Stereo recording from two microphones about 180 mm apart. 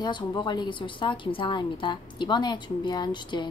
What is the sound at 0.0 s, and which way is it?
Speech, 25° left (ahead or behind).